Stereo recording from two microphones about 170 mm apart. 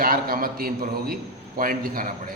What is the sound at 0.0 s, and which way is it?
A man's voice, 60° right (ahead or behind).